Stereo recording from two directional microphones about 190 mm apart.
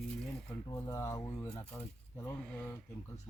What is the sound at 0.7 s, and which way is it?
Speech, 15° left (ahead or behind).